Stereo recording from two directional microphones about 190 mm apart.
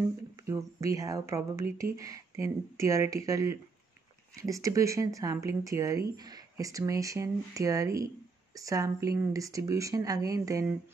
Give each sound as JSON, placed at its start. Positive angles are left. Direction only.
{"t": 0.5, "sound": "speech", "side_deg": -15}